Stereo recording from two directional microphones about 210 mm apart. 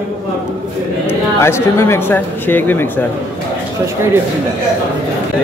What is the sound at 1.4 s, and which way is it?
A man's voice, 10° left (ahead or behind).